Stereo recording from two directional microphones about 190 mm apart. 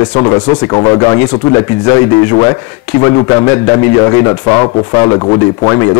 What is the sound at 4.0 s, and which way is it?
A man's voice, 15° left (ahead or behind).